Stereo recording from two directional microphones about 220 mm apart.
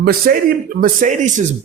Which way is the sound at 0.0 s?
40° right (ahead or behind).